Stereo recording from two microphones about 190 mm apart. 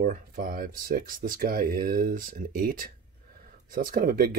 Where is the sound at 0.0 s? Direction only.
45° right (ahead or behind).